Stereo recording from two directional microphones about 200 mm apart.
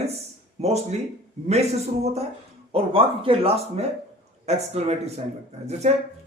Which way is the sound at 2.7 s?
25° right (ahead or behind).